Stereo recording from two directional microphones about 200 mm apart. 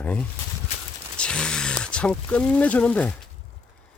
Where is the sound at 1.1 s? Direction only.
5° left (ahead or behind).